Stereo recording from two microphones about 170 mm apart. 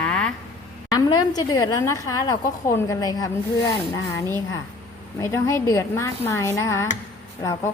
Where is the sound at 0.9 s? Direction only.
20° left (ahead or behind).